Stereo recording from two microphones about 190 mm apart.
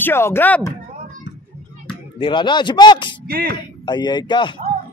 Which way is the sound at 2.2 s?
25° left (ahead or behind).